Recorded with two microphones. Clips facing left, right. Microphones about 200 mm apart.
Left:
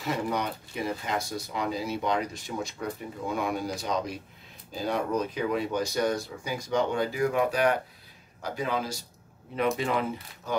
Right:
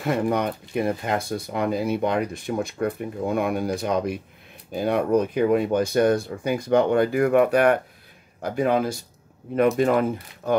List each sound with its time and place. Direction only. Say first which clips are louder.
0.0 s speech: right 7 dB; 55° right (ahead or behind)